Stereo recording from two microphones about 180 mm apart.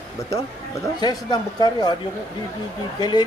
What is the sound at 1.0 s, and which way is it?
Speech, 25° left (ahead or behind).